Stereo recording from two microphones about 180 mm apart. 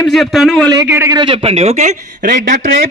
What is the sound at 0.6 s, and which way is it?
Speech, 20° right (ahead or behind).